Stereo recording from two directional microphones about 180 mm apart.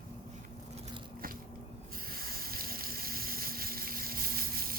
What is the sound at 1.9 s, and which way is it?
Water, 55° right (ahead or behind).